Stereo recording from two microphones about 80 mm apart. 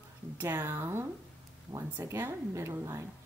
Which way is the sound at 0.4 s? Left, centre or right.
Right.